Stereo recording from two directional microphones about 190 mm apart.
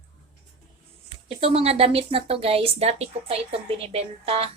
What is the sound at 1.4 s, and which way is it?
Speech, 30° right (ahead or behind).